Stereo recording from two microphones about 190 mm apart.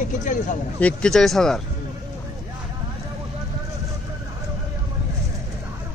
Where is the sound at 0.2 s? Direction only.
40° left (ahead or behind).